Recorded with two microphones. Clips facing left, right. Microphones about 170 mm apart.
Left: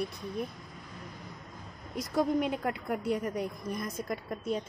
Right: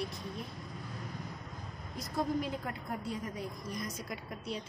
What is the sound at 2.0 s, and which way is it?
A woman's voice, 70° left (ahead or behind).